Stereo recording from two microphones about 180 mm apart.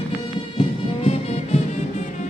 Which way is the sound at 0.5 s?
30° left (ahead or behind).